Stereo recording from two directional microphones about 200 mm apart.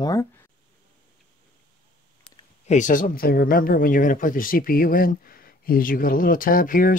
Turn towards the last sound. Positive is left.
turn(degrees=45)  # may be behind; listen again after turning